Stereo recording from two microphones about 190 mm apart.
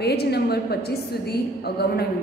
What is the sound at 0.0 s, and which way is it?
A woman's voice, 60° left (ahead or behind).